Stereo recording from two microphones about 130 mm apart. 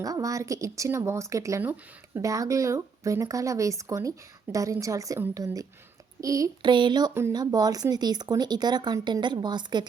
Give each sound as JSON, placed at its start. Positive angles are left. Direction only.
{"t": 0.0, "sound": "speech", "side_deg": -25}
{"t": 7.1, "sound": "speech", "side_deg": -20}
{"t": 7.3, "sound": "speech", "side_deg": -30}